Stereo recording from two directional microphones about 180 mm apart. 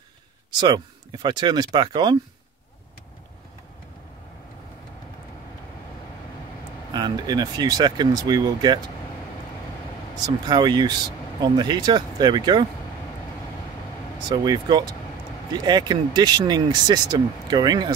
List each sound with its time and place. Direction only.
0.6 s speech: 25° right (ahead or behind)
6.9 s speech: 25° right (ahead or behind)
10.2 s speech: 25° right (ahead or behind)
14.3 s speech: 25° right (ahead or behind)